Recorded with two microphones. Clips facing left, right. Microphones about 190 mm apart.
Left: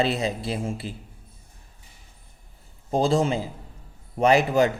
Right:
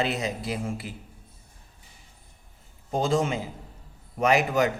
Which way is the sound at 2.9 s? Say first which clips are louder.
Left 3 dB; 35° left (ahead or behind).